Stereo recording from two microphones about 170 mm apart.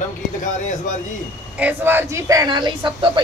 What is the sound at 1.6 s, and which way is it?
Speech, 10° right (ahead or behind).